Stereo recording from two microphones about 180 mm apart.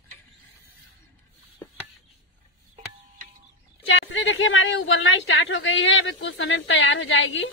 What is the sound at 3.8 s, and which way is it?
A woman's voice, 90° left.